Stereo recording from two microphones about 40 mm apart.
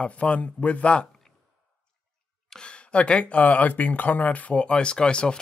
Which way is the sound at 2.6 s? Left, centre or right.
Left.